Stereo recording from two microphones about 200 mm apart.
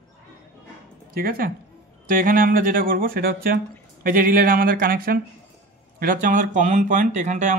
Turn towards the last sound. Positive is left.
turn(degrees=-35)  # may be behind; listen again after turning